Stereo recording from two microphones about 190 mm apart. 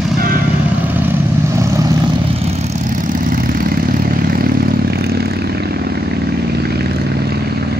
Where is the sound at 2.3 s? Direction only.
35° right (ahead or behind); by 6.0 s 55° right (ahead or behind).